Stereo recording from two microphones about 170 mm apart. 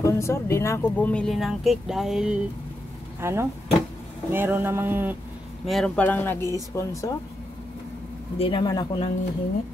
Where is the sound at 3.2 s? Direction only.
15° right (ahead or behind).